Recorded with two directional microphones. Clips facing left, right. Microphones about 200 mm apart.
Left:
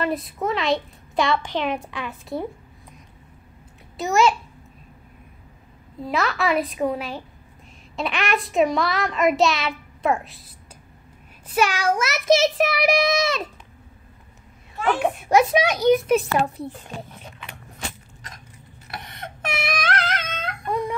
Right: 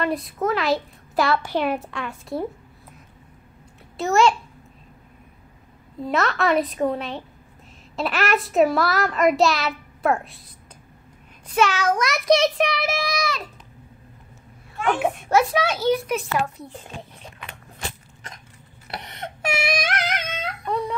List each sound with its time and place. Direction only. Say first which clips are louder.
0.0 s a child's voice: right 1 dB; centre (ahead or behind)
3.9 s a child's voice: right 1 dB; centre (ahead or behind)
5.9 s a child's voice: right 1 dB; centre (ahead or behind)
11.4 s a child's voice: right 1 dB; 10° left (ahead or behind)
12.8 s a sound: left 6 dB; 20° left (ahead or behind)
14.9 s a child's voice: even; centre (ahead or behind)
15.2 s a child's voice: left 3 dB; 15° left (ahead or behind)
16.1 s a child's voice: left 5 dB; 30° left (ahead or behind)
19.5 s a sound: even; 10° right (ahead or behind)
20.6 s guitar: left 1 dB; 10° left (ahead or behind)